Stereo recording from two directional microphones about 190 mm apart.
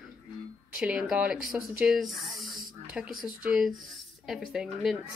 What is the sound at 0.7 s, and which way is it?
Speech, 5° right (ahead or behind).